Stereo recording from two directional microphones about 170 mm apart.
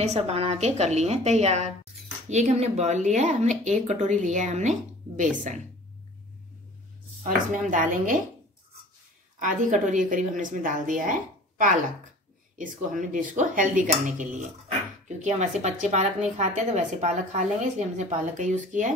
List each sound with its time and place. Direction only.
0.0 s a woman's voice: 40° right (ahead or behind)
7.7 s speech: 50° right (ahead or behind)
9.4 s speech: 50° right (ahead or behind)